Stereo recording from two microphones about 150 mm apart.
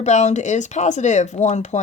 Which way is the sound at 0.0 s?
50° left (ahead or behind).